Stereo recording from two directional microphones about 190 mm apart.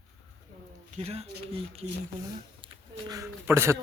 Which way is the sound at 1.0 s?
35° right (ahead or behind).